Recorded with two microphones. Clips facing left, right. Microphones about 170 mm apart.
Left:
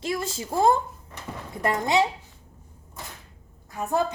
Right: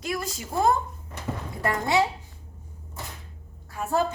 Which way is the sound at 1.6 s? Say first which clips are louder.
Left 1 dB; 20° left (ahead or behind).